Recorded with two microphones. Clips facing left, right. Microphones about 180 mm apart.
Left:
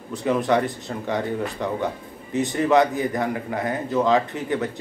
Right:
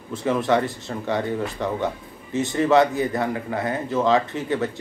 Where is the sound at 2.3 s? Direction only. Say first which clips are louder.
Right 1 dB; 20° left (ahead or behind).